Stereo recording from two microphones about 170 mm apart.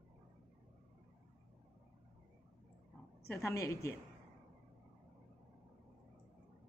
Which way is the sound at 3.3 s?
15° left (ahead or behind).